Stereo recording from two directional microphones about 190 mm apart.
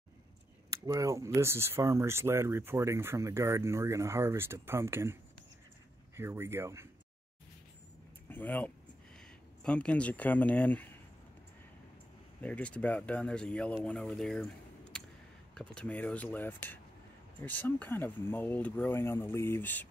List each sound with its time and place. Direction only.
0.7 s speech: 15° right (ahead or behind)
8.3 s speech: 10° left (ahead or behind)
12.4 s speech: 5° left (ahead or behind)